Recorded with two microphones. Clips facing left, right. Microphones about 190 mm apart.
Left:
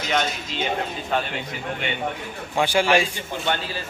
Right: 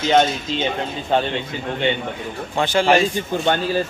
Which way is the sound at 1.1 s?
30° right (ahead or behind).